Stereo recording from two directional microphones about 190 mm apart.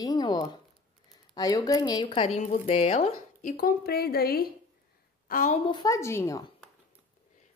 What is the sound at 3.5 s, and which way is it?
A woman's voice, 50° left (ahead or behind).